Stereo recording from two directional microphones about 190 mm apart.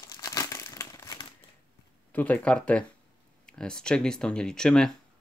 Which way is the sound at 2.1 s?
10° left (ahead or behind).